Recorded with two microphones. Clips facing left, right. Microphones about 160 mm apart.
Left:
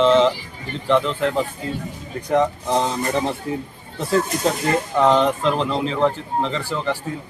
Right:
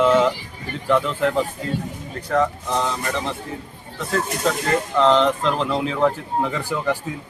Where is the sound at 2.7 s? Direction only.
35° left (ahead or behind).